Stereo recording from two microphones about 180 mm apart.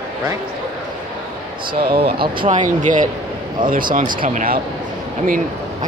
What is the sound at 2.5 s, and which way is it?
Speech, 45° right (ahead or behind).